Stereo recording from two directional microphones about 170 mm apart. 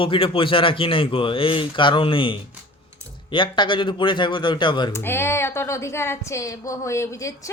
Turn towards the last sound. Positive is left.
turn(degrees=20)  # may be behind; listen again after turning